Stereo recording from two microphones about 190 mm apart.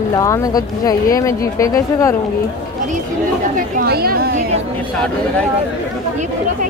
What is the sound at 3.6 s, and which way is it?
Speech, 50° right (ahead or behind).